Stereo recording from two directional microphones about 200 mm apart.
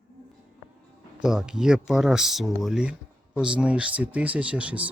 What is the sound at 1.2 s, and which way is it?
Speech, 5° right (ahead or behind).